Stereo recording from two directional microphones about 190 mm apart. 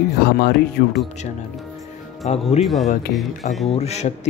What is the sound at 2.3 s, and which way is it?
Speech, 35° left (ahead or behind).